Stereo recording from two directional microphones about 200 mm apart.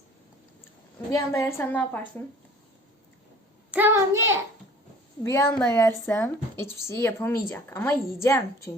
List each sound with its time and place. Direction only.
1.1 s a woman's voice: 15° left (ahead or behind)
3.7 s a child's voice: 10° right (ahead or behind)
5.2 s a woman's voice: 15° left (ahead or behind)